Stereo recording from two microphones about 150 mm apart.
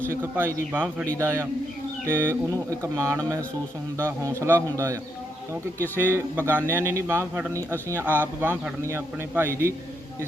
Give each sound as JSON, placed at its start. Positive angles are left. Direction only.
{"t": 0.1, "sound": "a man's voice", "side_deg": -15}
{"t": 6.0, "sound": "a man's voice", "side_deg": -15}